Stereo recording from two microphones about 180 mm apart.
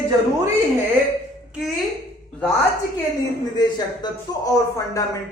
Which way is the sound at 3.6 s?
20° left (ahead or behind).